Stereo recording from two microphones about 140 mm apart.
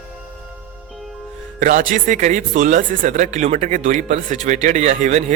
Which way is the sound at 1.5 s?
65° right (ahead or behind).